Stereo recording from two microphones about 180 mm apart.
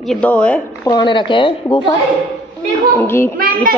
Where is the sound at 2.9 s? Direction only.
15° left (ahead or behind).